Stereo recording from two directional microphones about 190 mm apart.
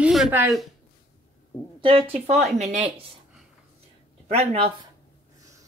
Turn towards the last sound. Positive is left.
turn(degrees=-30)  # may be behind; listen again after turning